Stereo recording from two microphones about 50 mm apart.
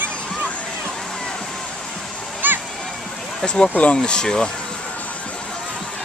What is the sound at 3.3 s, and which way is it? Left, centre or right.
Speech, centre.